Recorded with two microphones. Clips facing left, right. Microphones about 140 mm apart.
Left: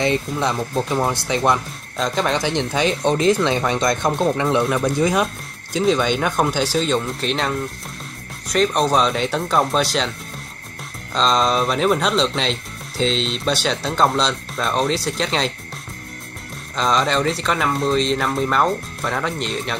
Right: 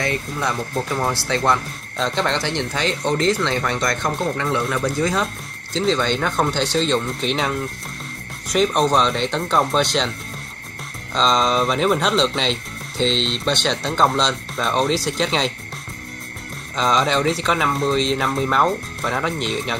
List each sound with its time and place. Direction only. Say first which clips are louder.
0.0 s speech: left 4 dB; 20° left (ahead or behind)
2.0 s speech: left 1 dB; 5° left (ahead or behind)
11.1 s speech: even; centre (ahead or behind)
16.7 s speech: even; centre (ahead or behind)